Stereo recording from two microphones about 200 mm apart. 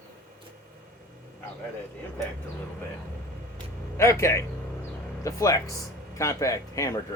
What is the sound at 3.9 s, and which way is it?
Speech, 15° left (ahead or behind).